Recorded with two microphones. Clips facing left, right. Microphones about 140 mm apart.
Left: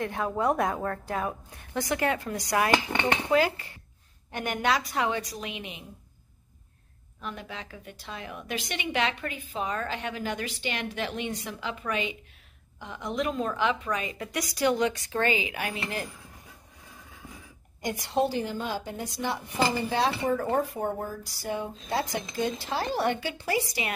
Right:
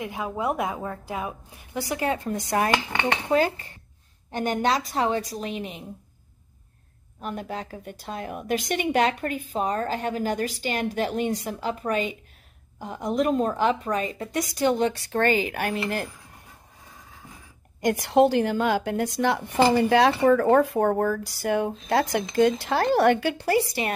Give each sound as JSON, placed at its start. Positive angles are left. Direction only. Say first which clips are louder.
{"t": 0.0, "sound": "a woman's voice", "louder": "left 1 dB", "side_deg": -10}
{"t": 2.3, "sound": "a woman's voice", "louder": "right 2 dB", "side_deg": -30}
{"t": 3.3, "sound": "a woman's voice", "louder": "right 2 dB", "side_deg": -45}
{"t": 4.3, "sound": "a woman's voice", "louder": "right 4 dB", "side_deg": -30}
{"t": 7.2, "sound": "a woman's voice", "louder": "right 6 dB", "side_deg": -45}
{"t": 15.0, "sound": "a woman's voice", "louder": "right 5 dB", "side_deg": -45}
{"t": 17.8, "sound": "a woman's voice", "louder": "right 8 dB", "side_deg": -70}